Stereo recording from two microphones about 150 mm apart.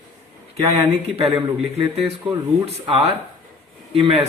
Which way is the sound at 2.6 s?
40° right (ahead or behind).